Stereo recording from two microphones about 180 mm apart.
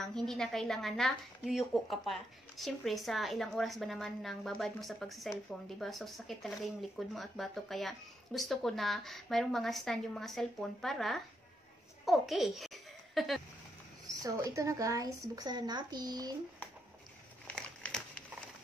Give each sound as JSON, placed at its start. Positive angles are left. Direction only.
{"t": 0.0, "sound": "a woman's voice", "side_deg": 5}
{"t": 14.0, "sound": "speech", "side_deg": -20}
{"t": 17.6, "sound": "a sound", "side_deg": 5}